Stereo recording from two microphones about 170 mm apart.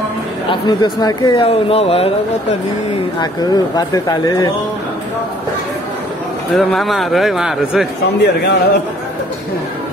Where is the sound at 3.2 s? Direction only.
25° left (ahead or behind).